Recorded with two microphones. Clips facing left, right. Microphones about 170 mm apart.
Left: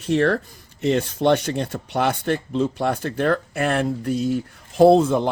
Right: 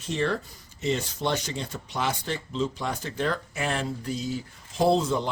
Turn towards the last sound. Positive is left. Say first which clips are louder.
# left 9 dB
turn(degrees=55)  # may be behind; listen again after turning